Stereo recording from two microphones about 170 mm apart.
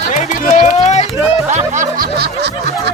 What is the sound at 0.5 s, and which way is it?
Speech, 45° left (ahead or behind).